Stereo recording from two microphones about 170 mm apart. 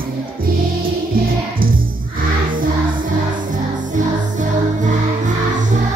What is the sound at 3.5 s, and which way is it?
Music, 50° right (ahead or behind).